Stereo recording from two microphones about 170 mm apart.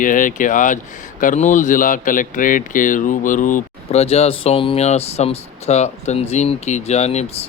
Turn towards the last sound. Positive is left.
turn(degrees=40)  # may be behind; listen again after turning